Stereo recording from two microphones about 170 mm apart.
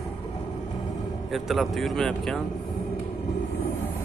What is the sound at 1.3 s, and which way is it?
Speech, centre (ahead or behind).